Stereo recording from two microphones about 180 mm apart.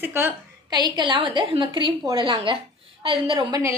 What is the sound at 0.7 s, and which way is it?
A woman's voice, 25° right (ahead or behind).